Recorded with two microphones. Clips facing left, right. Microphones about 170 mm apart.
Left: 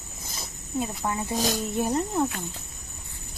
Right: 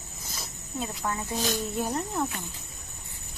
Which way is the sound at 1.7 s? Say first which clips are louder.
Left 4 dB; 20° left (ahead or behind).